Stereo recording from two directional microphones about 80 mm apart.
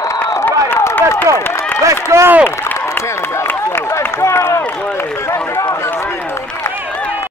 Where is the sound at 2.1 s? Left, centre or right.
Right.